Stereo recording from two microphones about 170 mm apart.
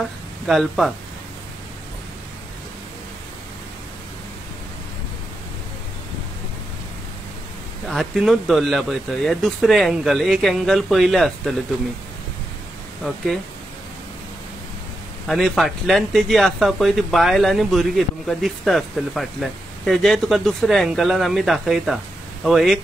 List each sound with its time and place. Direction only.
0.5 s speech: centre (ahead or behind)
7.9 s speech: centre (ahead or behind)
15.2 s speech: centre (ahead or behind)